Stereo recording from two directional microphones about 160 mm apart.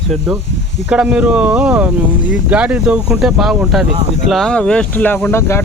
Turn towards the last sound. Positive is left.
turn(degrees=15)  # may be behind; listen again after turning